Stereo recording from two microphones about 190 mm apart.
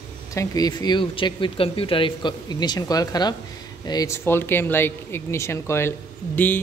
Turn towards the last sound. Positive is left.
turn(degrees=10)  # may be behind; listen again after turning